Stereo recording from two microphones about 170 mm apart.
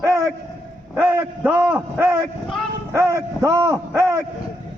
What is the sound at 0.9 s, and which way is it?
A man's voice, 10° right (ahead or behind).